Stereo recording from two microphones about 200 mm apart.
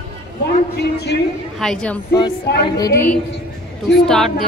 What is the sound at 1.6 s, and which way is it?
Speech, 5° left (ahead or behind).